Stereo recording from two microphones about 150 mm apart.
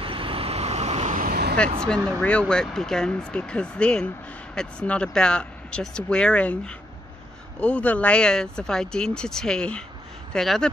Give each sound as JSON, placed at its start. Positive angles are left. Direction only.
{"t": 0.0, "sound": "vehicle", "side_deg": -35}
{"t": 1.2, "sound": "vehicle", "side_deg": -85}
{"t": 2.0, "sound": "speech", "side_deg": 10}